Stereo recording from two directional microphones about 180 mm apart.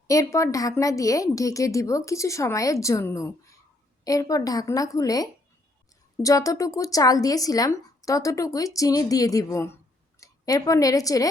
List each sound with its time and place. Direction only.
0.1 s a woman's voice: 15° left (ahead or behind)